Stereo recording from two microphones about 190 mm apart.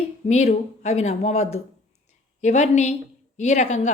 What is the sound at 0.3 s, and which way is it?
Speech, 35° left (ahead or behind).